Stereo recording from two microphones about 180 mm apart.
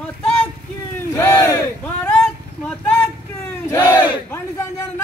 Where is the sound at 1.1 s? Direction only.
15° left (ahead or behind).